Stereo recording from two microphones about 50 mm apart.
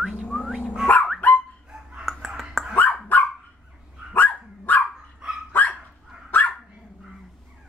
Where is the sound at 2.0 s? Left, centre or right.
Centre.